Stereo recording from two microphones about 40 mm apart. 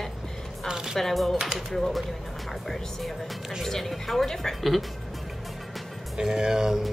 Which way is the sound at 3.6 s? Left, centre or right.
Centre.